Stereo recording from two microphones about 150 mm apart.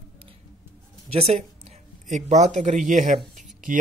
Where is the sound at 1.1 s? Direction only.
45° right (ahead or behind).